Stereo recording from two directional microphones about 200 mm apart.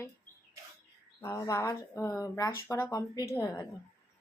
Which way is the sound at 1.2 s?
15° left (ahead or behind).